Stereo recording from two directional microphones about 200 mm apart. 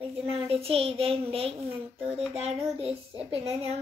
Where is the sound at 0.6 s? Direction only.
30° right (ahead or behind).